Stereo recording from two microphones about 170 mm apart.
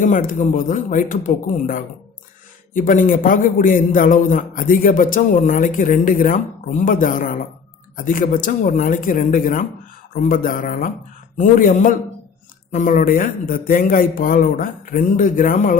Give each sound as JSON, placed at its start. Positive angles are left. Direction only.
{"t": 0.0, "sound": "a man's voice", "side_deg": 50}